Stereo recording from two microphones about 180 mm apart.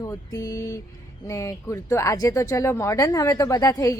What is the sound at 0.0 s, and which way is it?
Speech, 20° left (ahead or behind).